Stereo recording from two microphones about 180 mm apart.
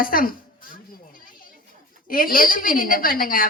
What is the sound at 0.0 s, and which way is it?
Speech, 55° left (ahead or behind).